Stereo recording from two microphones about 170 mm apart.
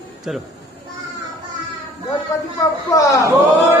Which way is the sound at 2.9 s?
20° left (ahead or behind).